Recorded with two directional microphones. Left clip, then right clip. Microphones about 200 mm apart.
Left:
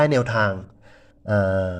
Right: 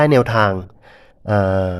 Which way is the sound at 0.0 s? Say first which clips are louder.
Right 5 dB; 15° right (ahead or behind).